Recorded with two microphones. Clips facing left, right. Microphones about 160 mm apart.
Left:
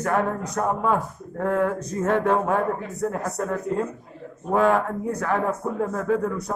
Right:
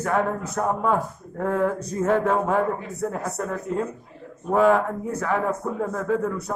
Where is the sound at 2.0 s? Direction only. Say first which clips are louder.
Even; 5° right (ahead or behind).